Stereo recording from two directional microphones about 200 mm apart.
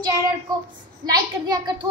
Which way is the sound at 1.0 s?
20° right (ahead or behind).